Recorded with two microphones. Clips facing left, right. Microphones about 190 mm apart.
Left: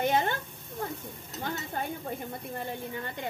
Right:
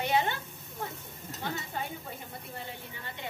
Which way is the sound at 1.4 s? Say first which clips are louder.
Left 2 dB; 45° left (ahead or behind).